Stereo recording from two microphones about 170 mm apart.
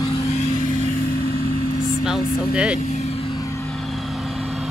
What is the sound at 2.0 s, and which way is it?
Music, 5° right (ahead or behind).